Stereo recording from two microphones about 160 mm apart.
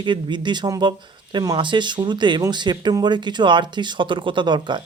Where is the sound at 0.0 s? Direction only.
30° right (ahead or behind).